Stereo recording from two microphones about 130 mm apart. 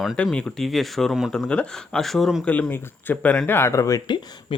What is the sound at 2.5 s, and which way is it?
Speech, 15° left (ahead or behind).